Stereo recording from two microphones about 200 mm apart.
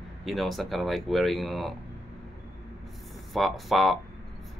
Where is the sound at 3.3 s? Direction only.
Centre (ahead or behind).